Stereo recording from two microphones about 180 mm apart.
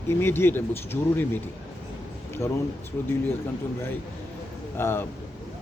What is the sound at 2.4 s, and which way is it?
Speech, 15° left (ahead or behind).